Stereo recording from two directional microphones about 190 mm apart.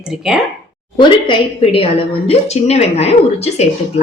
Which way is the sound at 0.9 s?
30° left (ahead or behind).